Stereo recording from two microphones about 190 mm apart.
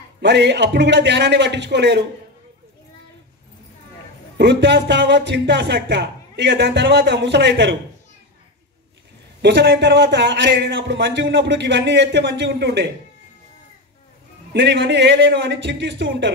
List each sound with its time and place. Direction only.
0.2 s a man's voice: 65° right (ahead or behind)
4.4 s a man's voice: 65° right (ahead or behind)
9.4 s a man's voice: 65° right (ahead or behind)
14.5 s a man's voice: 70° right (ahead or behind)